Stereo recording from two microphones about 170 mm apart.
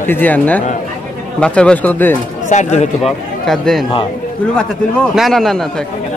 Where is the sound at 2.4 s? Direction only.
45° left (ahead or behind).